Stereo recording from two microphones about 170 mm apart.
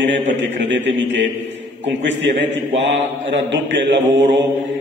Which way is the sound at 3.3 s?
90° right.